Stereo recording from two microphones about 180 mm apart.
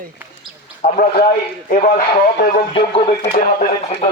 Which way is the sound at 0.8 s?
45° left (ahead or behind).